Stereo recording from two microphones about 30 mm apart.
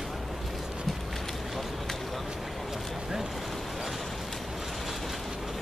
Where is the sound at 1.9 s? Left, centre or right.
Centre.